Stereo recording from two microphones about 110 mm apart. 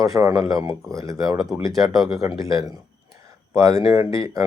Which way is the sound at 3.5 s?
30° right (ahead or behind).